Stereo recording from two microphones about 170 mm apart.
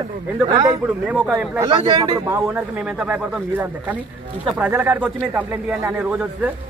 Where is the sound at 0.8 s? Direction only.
5° right (ahead or behind).